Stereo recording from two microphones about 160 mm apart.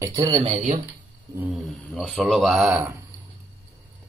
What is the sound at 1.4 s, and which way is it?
Speech, 10° right (ahead or behind).